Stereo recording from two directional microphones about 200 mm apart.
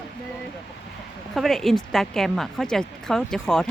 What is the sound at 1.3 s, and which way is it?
A woman's voice, centre (ahead or behind).